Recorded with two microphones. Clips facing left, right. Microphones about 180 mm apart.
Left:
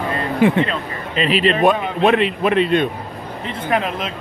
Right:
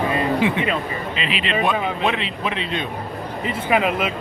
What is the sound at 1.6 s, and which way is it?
Speech, 55° left (ahead or behind).